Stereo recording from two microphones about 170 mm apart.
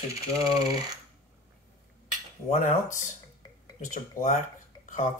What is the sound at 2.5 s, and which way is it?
Speech, 50° left (ahead or behind).